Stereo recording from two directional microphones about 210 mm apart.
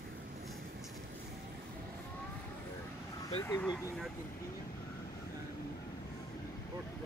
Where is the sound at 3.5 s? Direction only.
15° left (ahead or behind).